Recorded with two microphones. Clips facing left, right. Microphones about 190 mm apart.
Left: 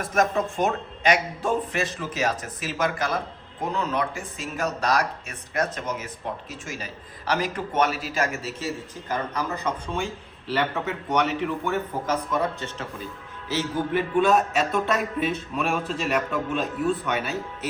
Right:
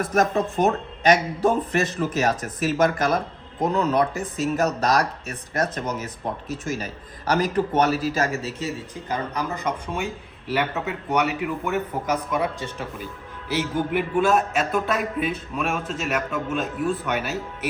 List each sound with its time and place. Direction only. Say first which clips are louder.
0.1 s speech: left 1 dB; 40° right (ahead or behind)
7.3 s speech: right 5 dB; 40° right (ahead or behind)
8.6 s a man's voice: right 1 dB; 15° right (ahead or behind)